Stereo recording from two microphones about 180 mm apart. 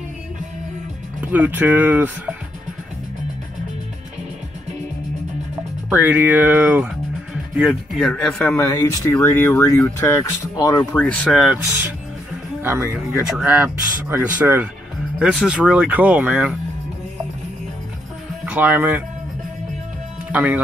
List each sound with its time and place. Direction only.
1.3 s speech: 10° right (ahead or behind)
5.9 s a man's voice: 10° right (ahead or behind)
8.5 s a man's voice: 15° left (ahead or behind); by 11.5 s centre (ahead or behind)
12.6 s a man's voice: 10° right (ahead or behind)
18.4 s speech: 10° right (ahead or behind)
20.2 s speech: 10° right (ahead or behind)